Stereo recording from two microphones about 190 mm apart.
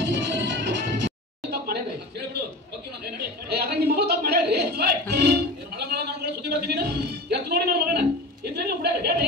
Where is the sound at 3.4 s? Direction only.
60° right (ahead or behind).